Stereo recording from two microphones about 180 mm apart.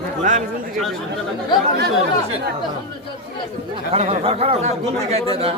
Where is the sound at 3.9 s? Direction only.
35° right (ahead or behind).